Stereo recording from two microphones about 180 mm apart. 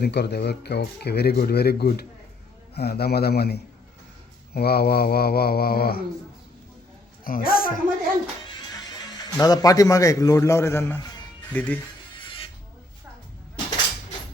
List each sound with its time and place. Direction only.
0.0 s speech: 70° left (ahead or behind)
7.3 s a woman's voice: 50° left (ahead or behind)
8.4 s speech: 20° left (ahead or behind)